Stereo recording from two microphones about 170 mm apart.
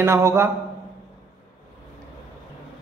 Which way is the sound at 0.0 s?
15° right (ahead or behind).